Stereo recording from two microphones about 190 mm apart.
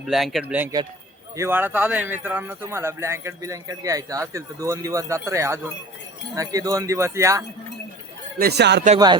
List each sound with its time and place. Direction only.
0.1 s speech: centre (ahead or behind)
8.4 s speech: 60° right (ahead or behind)